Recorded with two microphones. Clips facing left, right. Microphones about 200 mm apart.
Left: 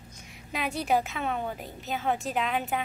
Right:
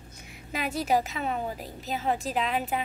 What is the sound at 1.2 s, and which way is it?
A woman's voice, centre (ahead or behind).